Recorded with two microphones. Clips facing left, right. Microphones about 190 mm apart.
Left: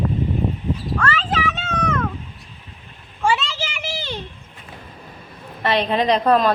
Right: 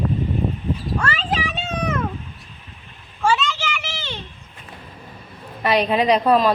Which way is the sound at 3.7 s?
40° left (ahead or behind).